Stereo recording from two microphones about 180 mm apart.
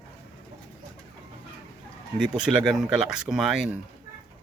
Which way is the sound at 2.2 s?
5° right (ahead or behind).